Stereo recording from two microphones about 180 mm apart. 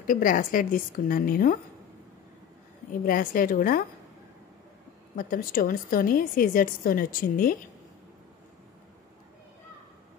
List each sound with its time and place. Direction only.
0.0 s a woman's voice: 50° left (ahead or behind)
3.1 s a woman's voice: 50° left (ahead or behind)
5.1 s a woman's voice: 50° left (ahead or behind)